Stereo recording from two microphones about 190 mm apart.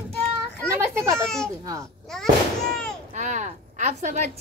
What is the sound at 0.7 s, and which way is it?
Children playing, 15° right (ahead or behind).